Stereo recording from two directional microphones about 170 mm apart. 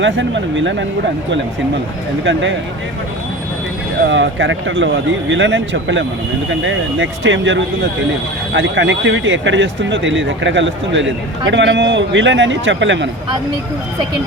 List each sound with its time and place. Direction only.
0.0 s speech: 90° right
2.2 s speech: 90° right
4.1 s speech: 90° right